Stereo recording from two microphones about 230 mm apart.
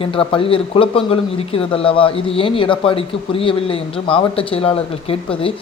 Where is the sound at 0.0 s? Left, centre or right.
Left.